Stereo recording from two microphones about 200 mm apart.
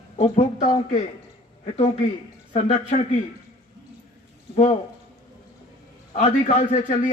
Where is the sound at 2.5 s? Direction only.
30° left (ahead or behind).